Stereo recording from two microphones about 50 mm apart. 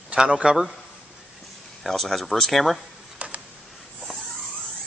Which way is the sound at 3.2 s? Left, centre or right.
Right.